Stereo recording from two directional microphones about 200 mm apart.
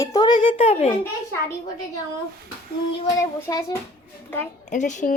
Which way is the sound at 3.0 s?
15° left (ahead or behind).